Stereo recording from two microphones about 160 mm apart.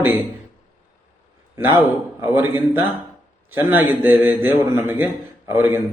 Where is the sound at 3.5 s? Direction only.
15° right (ahead or behind).